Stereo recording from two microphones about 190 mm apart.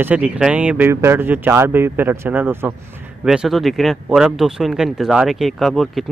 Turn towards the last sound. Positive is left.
turn(degrees=0)  # may be behind; listen again after turning